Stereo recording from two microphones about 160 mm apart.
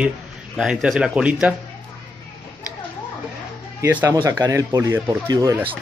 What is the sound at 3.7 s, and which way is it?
Speech, 15° right (ahead or behind).